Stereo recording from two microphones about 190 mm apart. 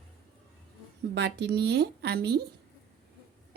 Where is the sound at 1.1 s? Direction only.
65° right (ahead or behind).